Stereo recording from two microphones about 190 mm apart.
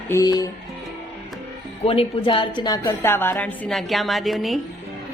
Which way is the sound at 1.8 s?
30° left (ahead or behind).